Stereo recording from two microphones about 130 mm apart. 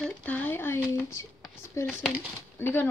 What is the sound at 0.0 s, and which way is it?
Speech, 10° left (ahead or behind).